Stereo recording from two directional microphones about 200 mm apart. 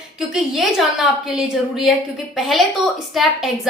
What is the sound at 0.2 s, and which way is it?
A woman's voice, centre (ahead or behind).